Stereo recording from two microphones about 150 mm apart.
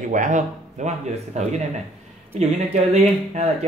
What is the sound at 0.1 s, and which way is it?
Speech, 55° right (ahead or behind).